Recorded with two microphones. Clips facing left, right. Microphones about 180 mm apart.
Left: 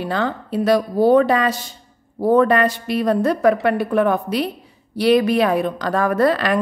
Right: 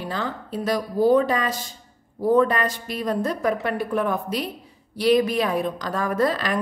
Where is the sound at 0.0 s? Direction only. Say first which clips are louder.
Left 6 dB; 65° left (ahead or behind).